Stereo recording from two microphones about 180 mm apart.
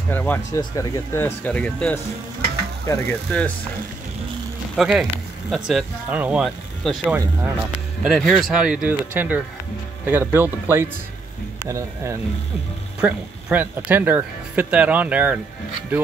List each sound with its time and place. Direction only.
0.1 s speech: 10° left (ahead or behind)
4.7 s speech: centre (ahead or behind)